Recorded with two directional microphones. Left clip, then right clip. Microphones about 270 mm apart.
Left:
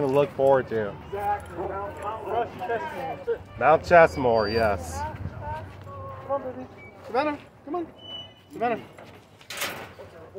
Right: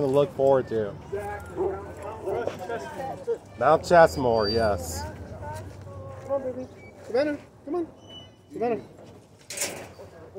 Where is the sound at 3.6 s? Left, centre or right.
Centre.